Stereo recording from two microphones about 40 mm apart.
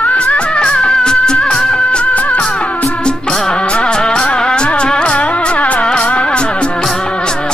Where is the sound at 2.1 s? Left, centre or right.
Left.